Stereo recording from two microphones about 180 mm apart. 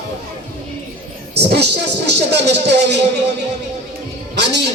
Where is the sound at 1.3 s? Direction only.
65° right (ahead or behind).